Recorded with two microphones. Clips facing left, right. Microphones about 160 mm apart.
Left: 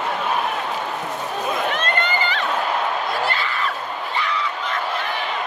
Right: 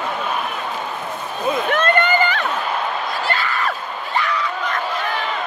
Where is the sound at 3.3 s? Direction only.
50° right (ahead or behind).